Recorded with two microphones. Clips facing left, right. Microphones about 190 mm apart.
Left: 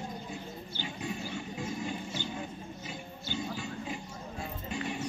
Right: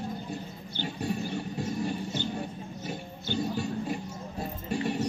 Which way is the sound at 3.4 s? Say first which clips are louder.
Right 7 dB; 40° right (ahead or behind).